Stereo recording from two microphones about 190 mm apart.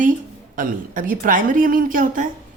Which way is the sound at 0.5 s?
45° right (ahead or behind).